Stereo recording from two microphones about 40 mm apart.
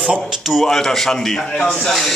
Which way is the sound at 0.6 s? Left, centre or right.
Centre.